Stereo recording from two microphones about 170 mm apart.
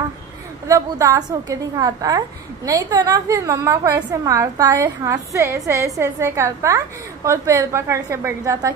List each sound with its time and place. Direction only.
0.7 s a woman's voice: 20° right (ahead or behind)